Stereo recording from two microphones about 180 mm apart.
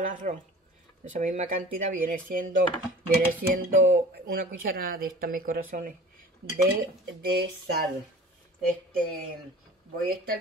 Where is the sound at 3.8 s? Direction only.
50° right (ahead or behind).